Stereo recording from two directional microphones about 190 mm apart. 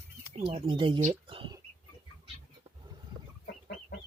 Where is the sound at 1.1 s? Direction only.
25° right (ahead or behind).